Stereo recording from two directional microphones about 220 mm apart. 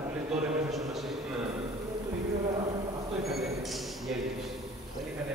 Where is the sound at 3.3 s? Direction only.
Centre (ahead or behind).